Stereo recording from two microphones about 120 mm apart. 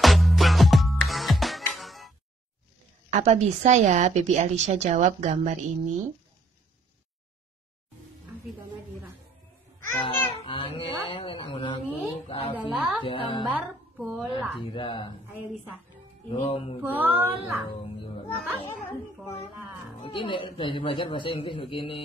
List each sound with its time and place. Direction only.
0.0 s music: centre (ahead or behind)
3.1 s a woman's voice: 70° right (ahead or behind)
4.6 s a woman's voice: 65° right (ahead or behind)
8.3 s music: 15° right (ahead or behind)
10.0 s a child's voice: 45° left (ahead or behind)
12.5 s a sound: 10° right (ahead or behind)
13.0 s speech: 40° left (ahead or behind)
13.9 s speech: centre (ahead or behind)
14.7 s a child's voice: 40° left (ahead or behind)
16.3 s a child's voice: 50° left (ahead or behind)
16.8 s a sound: 15° right (ahead or behind)
17.8 s a child's voice: 45° left (ahead or behind)
18.8 s speech: 15° left (ahead or behind)
20.0 s a child's voice: 45° left (ahead or behind)